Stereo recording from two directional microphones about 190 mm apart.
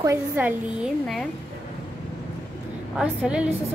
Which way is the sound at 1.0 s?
5° left (ahead or behind).